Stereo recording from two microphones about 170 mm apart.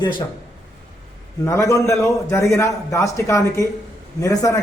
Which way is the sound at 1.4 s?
20° left (ahead or behind).